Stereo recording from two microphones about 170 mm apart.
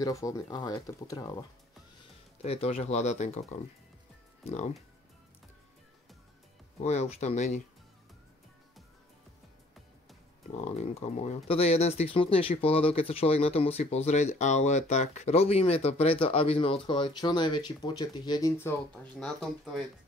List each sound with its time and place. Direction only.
0.0 s speech: 20° left (ahead or behind)
2.4 s speech: 35° left (ahead or behind)
6.8 s speech: 40° left (ahead or behind)
10.6 s speech: 40° left (ahead or behind); by 18.5 s 25° left (ahead or behind)
18.6 s speech: 10° left (ahead or behind)